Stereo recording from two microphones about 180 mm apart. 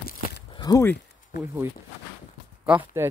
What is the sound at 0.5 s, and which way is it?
Speech, 20° left (ahead or behind).